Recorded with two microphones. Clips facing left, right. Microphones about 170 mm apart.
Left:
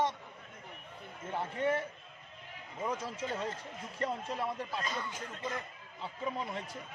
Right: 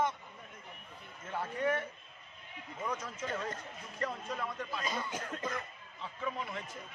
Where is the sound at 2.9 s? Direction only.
30° left (ahead or behind).